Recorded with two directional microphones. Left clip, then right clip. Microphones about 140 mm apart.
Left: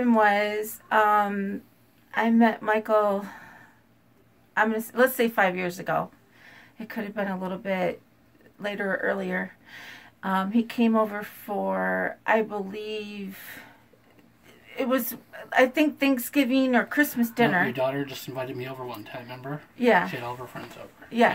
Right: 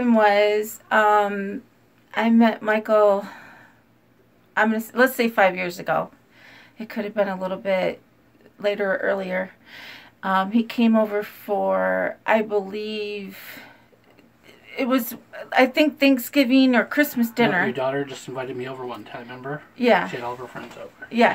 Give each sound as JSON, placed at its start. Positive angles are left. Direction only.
{"t": 0.0, "sound": "speech", "side_deg": -25}
{"t": 4.6, "sound": "speech", "side_deg": -30}
{"t": 14.7, "sound": "speech", "side_deg": -25}
{"t": 17.7, "sound": "speech", "side_deg": 30}
{"t": 19.7, "sound": "speech", "side_deg": -25}
{"t": 20.2, "sound": "speech", "side_deg": 25}